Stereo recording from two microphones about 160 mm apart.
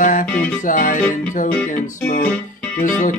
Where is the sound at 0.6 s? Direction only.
55° left (ahead or behind).